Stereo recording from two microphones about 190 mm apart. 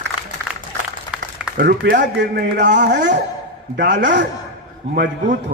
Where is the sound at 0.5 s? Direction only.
5° right (ahead or behind).